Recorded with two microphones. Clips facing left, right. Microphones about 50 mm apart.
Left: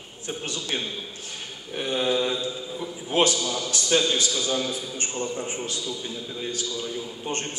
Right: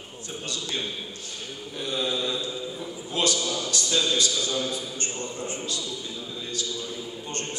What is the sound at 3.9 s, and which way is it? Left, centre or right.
Mantra, left.